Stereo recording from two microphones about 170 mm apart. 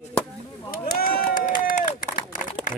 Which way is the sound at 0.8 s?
60° left (ahead or behind).